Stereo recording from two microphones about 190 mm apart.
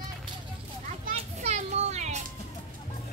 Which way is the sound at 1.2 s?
35° right (ahead or behind).